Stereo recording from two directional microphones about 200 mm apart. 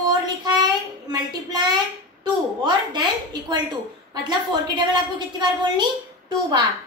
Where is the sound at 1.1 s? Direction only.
20° right (ahead or behind).